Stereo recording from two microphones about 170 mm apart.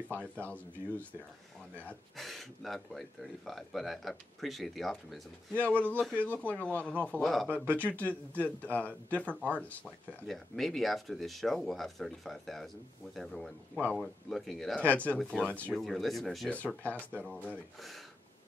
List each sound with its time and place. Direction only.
0.4 s speech: 10° left (ahead or behind)